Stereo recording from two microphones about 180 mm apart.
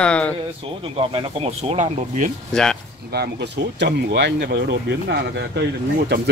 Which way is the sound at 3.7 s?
75° right (ahead or behind).